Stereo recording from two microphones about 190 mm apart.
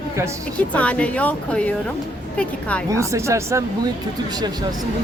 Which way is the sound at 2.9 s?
15° right (ahead or behind).